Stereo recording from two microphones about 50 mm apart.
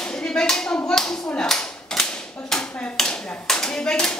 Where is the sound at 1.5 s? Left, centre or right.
Centre.